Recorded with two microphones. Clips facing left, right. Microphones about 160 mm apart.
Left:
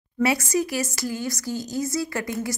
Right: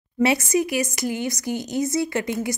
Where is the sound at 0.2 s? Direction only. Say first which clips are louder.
Right 2 dB; 20° right (ahead or behind).